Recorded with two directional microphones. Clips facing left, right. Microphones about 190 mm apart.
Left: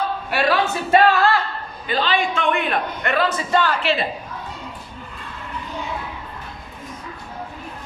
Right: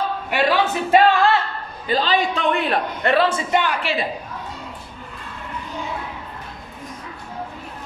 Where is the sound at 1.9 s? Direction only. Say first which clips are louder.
Right 2 dB; 40° right (ahead or behind).